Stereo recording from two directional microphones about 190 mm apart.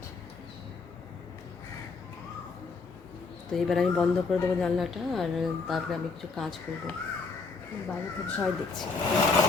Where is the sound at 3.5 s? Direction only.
Centre (ahead or behind).